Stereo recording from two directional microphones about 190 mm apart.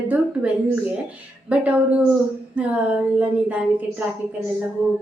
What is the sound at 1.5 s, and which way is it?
A woman's voice, 5° right (ahead or behind).